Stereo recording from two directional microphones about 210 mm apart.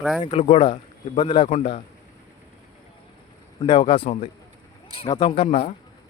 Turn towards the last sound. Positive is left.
turn(degrees=25)  # may be behind; listen again after turning